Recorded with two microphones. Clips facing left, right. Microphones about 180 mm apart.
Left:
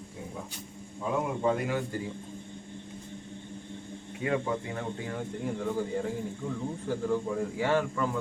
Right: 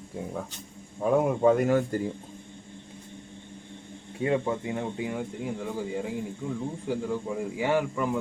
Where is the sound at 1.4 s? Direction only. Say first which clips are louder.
Right 7 dB; 45° right (ahead or behind).